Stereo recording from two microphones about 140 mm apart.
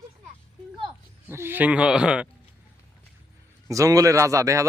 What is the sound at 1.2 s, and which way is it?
Speech, 15° right (ahead or behind).